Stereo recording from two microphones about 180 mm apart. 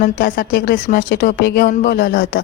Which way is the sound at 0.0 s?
50° left (ahead or behind).